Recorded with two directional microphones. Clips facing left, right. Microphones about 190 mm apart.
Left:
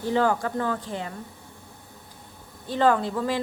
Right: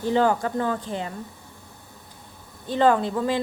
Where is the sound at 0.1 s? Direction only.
20° right (ahead or behind).